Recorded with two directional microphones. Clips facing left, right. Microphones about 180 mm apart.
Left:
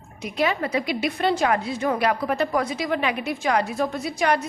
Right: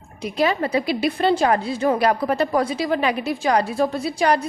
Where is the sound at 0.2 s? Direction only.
35° right (ahead or behind).